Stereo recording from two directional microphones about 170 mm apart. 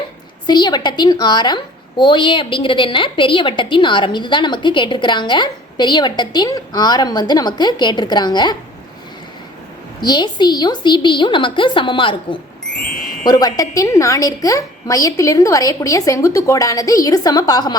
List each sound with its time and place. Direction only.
0.4 s a woman's voice: 25° left (ahead or behind)
10.0 s a woman's voice: 25° left (ahead or behind)